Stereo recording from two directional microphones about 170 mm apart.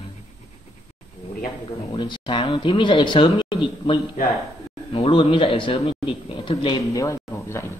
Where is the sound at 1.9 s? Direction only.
30° left (ahead or behind).